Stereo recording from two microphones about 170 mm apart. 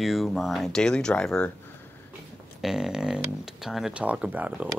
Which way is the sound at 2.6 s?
5° right (ahead or behind).